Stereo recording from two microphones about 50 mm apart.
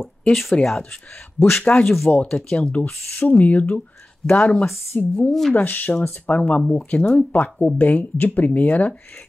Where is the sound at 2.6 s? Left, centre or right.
Left.